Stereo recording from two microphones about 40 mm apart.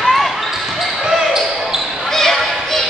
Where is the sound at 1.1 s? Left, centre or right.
Centre.